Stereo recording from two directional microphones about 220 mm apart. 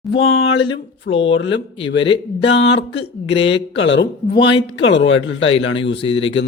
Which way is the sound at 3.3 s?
25° left (ahead or behind).